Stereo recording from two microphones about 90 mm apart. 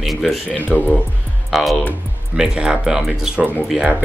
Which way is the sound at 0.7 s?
20° left (ahead or behind).